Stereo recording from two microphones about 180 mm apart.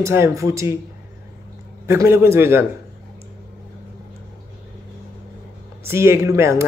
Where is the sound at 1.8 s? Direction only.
15° right (ahead or behind).